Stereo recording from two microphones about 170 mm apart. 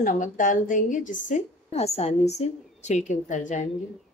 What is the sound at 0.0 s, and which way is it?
A woman's voice, 50° left (ahead or behind).